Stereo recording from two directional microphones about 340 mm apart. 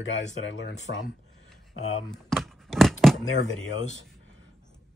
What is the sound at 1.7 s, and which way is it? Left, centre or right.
Speech, centre.